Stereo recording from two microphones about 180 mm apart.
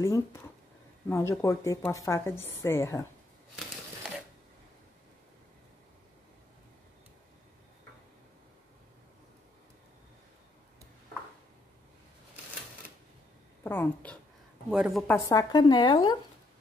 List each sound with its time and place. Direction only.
0.0 s speech: 15° left (ahead or behind)
13.7 s speech: 10° left (ahead or behind)
14.7 s a woman's voice: centre (ahead or behind)
15.0 s speech: 15° left (ahead or behind)